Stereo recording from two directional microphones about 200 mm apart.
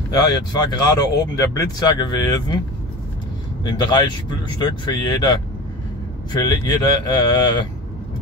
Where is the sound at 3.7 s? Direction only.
20° left (ahead or behind).